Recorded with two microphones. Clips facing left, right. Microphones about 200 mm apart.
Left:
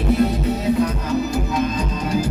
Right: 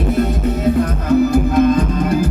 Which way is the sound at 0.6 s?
55° right (ahead or behind).